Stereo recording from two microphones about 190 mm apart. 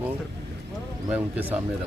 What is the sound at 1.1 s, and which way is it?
Speech, 10° right (ahead or behind).